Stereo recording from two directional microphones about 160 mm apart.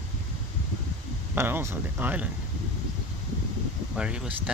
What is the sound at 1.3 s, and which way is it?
Speech, 15° right (ahead or behind).